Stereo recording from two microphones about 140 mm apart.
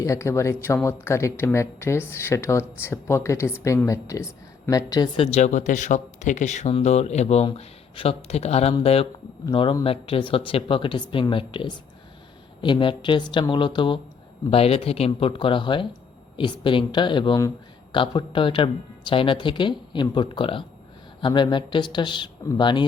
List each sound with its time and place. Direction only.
0.0 s speech: 20° left (ahead or behind)
5.1 s speech: 50° left (ahead or behind)
14.5 s speech: 45° left (ahead or behind)